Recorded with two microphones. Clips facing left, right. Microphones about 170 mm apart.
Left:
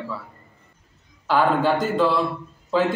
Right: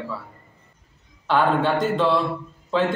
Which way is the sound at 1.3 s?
Centre (ahead or behind).